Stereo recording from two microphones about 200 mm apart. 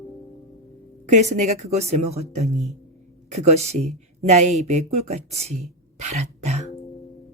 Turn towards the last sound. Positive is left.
turn(degrees=-35)  # may be behind; listen again after turning